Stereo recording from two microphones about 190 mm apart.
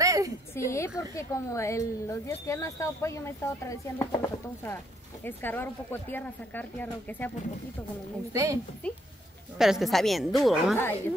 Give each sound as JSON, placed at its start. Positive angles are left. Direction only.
{"t": 0.0, "sound": "a sound", "side_deg": -20}
{"t": 0.6, "sound": "speech", "side_deg": 15}
{"t": 8.3, "sound": "a woman's voice", "side_deg": -15}
{"t": 8.8, "sound": "a woman's voice", "side_deg": 5}